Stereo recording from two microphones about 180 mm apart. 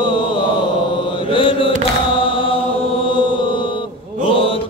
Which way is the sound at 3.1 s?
25° left (ahead or behind).